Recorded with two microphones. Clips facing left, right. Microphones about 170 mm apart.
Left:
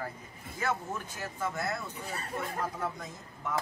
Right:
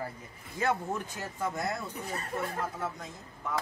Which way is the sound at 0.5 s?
15° right (ahead or behind).